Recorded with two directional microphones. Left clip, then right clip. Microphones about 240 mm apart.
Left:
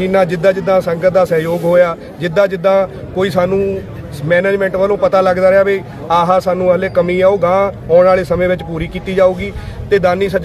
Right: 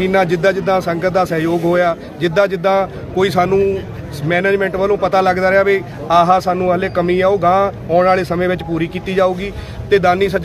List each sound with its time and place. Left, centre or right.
0.0 s a man's voice: centre